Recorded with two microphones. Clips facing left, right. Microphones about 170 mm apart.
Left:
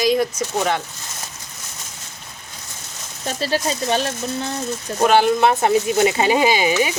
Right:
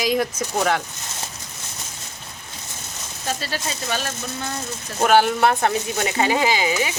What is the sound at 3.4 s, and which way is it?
Speech, 30° left (ahead or behind).